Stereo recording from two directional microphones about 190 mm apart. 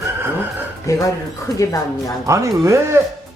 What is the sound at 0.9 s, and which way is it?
Speech, 15° left (ahead or behind).